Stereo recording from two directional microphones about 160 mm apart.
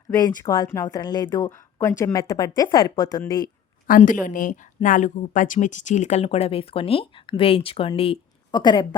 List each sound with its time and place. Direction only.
0.1 s speech: 20° left (ahead or behind)
1.5 s speech: 15° left (ahead or behind)
3.8 s a woman's voice: 55° left (ahead or behind); by 9.0 s 25° left (ahead or behind)